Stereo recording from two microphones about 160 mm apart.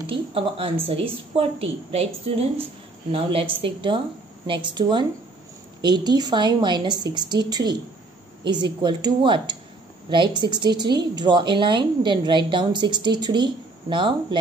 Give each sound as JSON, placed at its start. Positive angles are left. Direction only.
{"t": 0.0, "sound": "a woman's voice", "side_deg": -35}